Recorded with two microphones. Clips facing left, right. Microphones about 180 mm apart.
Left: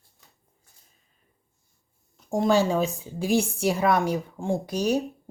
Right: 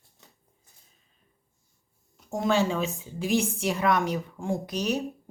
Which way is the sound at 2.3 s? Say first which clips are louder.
Left 4 dB; 35° left (ahead or behind).